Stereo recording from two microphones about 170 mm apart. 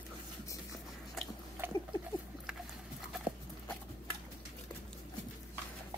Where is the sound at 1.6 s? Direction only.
15° right (ahead or behind).